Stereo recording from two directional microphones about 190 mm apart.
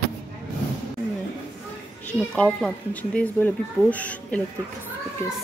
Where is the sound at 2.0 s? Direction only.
5° left (ahead or behind).